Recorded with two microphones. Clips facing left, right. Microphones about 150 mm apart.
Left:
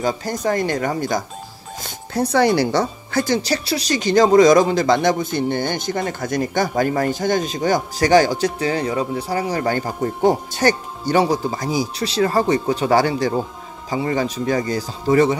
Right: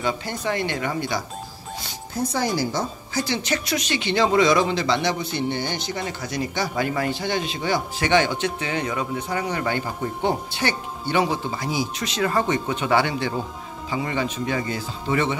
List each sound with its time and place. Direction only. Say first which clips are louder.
0.0 s speech: left 5 dB; 40° left (ahead or behind)
2.1 s speech: left 8 dB; 65° left (ahead or behind)
3.4 s speech: left 4 dB; 35° left (ahead or behind)